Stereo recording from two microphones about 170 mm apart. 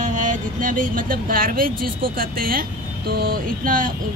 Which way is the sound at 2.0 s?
60° right (ahead or behind).